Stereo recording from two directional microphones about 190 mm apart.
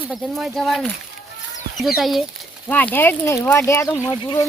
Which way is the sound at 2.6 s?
10° left (ahead or behind).